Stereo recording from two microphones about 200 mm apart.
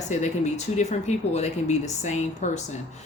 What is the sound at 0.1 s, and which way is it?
Speech, 35° left (ahead or behind).